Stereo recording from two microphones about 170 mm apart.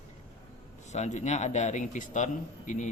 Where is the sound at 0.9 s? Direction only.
45° left (ahead or behind).